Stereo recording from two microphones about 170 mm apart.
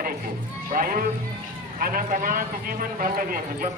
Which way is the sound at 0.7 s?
55° right (ahead or behind).